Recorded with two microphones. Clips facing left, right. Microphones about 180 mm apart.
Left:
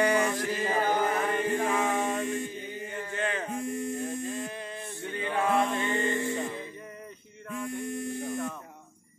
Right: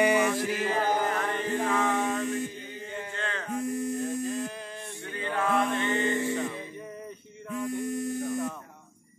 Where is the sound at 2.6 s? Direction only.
15° left (ahead or behind).